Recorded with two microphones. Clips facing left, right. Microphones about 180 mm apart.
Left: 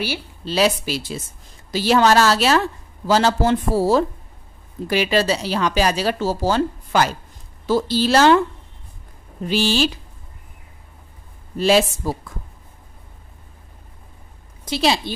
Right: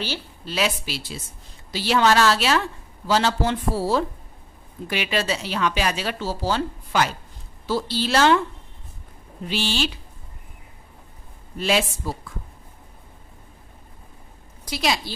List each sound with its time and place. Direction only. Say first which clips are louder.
0.5 s speech: left 6 dB; 40° left (ahead or behind)
9.5 s speech: left 6 dB; 40° left (ahead or behind)
11.5 s speech: left 6 dB; 35° left (ahead or behind)
14.6 s a woman's voice: left 5 dB; 30° left (ahead or behind)